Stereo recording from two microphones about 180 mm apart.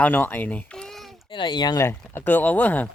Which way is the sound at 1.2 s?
25° left (ahead or behind).